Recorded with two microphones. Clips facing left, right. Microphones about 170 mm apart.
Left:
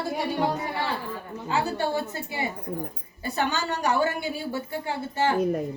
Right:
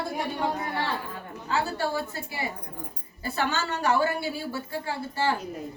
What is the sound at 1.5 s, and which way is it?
A woman's voice, 20° left (ahead or behind).